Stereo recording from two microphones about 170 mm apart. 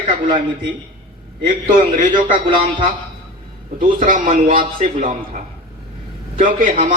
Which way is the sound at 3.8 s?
50° right (ahead or behind).